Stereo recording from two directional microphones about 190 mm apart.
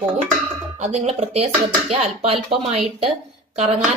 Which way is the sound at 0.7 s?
35° right (ahead or behind).